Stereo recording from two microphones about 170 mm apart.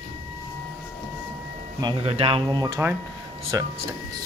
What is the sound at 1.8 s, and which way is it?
Speech, 25° right (ahead or behind).